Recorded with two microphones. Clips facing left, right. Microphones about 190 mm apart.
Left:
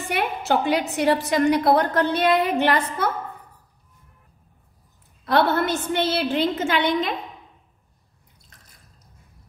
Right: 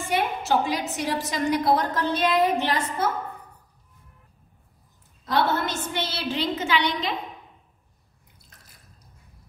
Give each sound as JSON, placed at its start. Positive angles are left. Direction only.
{"t": 0.1, "sound": "a woman's voice", "side_deg": 60}
{"t": 5.2, "sound": "a woman's voice", "side_deg": 60}